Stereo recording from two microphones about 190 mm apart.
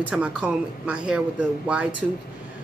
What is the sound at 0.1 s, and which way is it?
Speech, 5° right (ahead or behind).